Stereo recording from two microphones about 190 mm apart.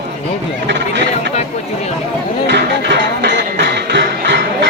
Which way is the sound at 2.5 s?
65° right (ahead or behind).